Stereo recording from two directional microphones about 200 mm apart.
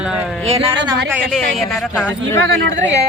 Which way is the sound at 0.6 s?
25° right (ahead or behind).